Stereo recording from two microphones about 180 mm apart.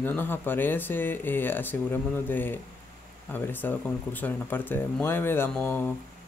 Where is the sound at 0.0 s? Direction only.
10° left (ahead or behind).